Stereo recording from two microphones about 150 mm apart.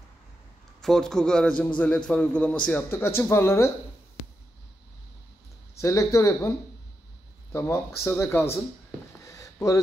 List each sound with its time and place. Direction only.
0.7 s a man's voice: 5° left (ahead or behind)
5.8 s speech: 20° left (ahead or behind)
7.5 s speech: 20° left (ahead or behind)
9.2 s a sound: 20° left (ahead or behind)